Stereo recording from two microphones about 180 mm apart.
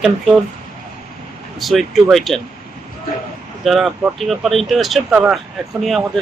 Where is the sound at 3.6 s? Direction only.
Centre (ahead or behind).